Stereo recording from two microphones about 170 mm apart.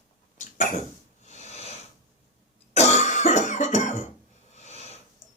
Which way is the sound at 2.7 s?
40° left (ahead or behind).